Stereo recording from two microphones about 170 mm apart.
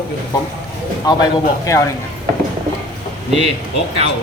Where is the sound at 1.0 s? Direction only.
20° left (ahead or behind).